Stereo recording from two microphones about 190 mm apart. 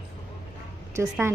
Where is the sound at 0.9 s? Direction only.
15° right (ahead or behind).